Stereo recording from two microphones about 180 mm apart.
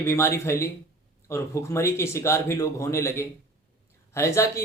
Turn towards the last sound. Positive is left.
turn(degrees=15)  # may be behind; listen again after turning